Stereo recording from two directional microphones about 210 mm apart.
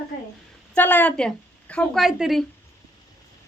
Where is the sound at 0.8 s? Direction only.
10° left (ahead or behind).